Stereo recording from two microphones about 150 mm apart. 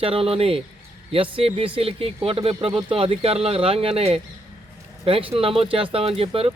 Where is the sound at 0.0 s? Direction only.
40° right (ahead or behind).